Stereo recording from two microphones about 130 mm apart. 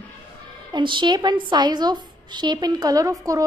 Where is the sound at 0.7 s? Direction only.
35° right (ahead or behind).